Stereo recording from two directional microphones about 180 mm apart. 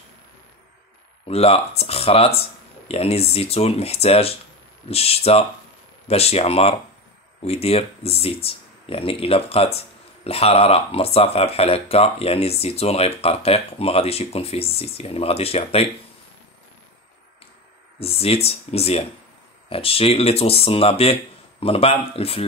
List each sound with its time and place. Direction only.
1.2 s speech: 35° left (ahead or behind)
17.9 s speech: 35° left (ahead or behind)